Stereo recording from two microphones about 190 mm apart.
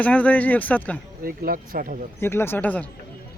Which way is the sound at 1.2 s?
50° right (ahead or behind).